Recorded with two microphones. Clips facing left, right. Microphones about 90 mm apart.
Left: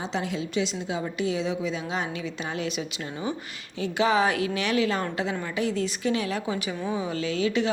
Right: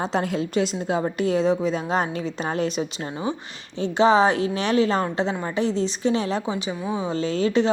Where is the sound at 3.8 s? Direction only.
30° right (ahead or behind).